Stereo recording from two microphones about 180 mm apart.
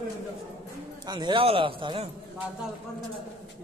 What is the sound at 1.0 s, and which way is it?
Speech, 25° right (ahead or behind).